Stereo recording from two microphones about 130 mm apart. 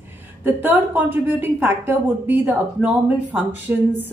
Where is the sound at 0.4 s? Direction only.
15° right (ahead or behind).